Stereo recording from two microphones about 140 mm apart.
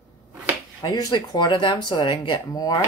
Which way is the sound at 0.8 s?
25° left (ahead or behind).